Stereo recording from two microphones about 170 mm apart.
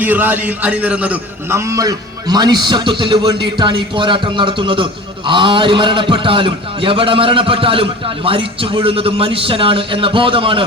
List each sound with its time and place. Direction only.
0.0 s a man's voice: 10° right (ahead or behind); by 10.7 s 30° right (ahead or behind)